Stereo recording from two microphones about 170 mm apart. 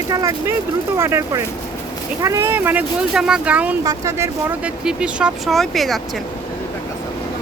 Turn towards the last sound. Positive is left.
turn(degrees=0)  # may be behind; listen again after turning